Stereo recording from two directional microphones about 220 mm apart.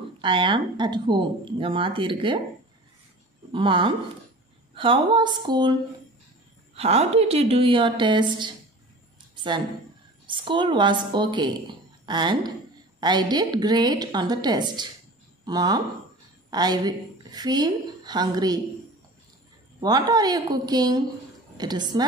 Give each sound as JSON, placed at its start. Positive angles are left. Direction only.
{"t": 0.2, "sound": "speech", "side_deg": -20}
{"t": 3.5, "sound": "speech", "side_deg": -20}
{"t": 9.3, "sound": "a sound", "side_deg": -20}
{"t": 10.2, "sound": "a woman's voice", "side_deg": -20}
{"t": 19.8, "sound": "a woman's voice", "side_deg": -20}